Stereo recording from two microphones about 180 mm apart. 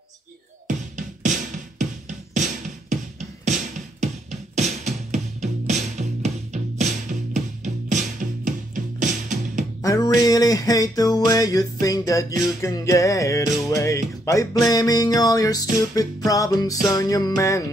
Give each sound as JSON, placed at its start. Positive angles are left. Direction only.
{"t": 0.9, "sound": "music", "side_deg": -45}
{"t": 9.8, "sound": "music", "side_deg": 20}